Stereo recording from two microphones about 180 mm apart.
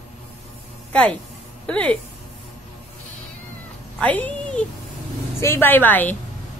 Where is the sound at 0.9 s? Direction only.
5° left (ahead or behind).